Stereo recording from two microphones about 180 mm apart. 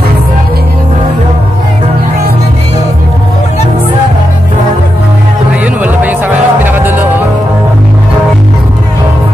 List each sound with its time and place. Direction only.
5.8 s music: 10° right (ahead or behind)